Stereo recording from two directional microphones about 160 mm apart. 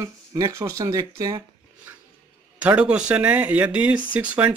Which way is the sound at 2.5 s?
10° right (ahead or behind).